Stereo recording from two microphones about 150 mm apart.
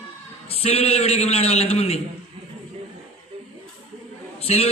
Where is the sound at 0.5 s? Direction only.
40° left (ahead or behind).